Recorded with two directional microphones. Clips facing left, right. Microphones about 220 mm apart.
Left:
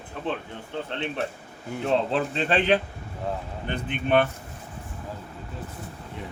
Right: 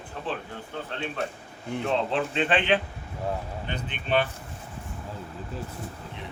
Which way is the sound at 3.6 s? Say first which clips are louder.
Left 6 dB; 55° left (ahead or behind).